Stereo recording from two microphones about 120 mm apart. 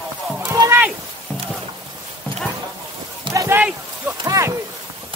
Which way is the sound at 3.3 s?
20° right (ahead or behind).